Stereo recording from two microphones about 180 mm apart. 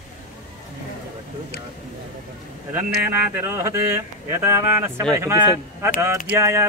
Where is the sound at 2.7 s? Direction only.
10° right (ahead or behind).